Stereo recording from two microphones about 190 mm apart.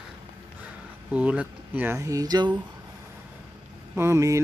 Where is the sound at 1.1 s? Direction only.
5° right (ahead or behind).